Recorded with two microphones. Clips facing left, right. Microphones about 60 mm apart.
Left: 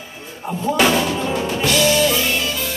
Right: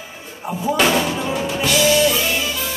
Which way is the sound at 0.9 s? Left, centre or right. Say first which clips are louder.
Left 1 dB; centre.